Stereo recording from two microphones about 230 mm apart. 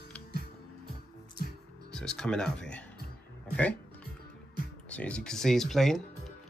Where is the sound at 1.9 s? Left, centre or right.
Centre.